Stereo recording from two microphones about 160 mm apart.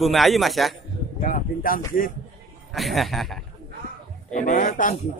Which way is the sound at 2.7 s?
Centre (ahead or behind).